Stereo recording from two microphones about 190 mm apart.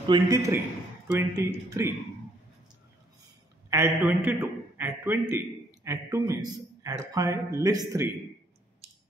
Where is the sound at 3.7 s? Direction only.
10° right (ahead or behind).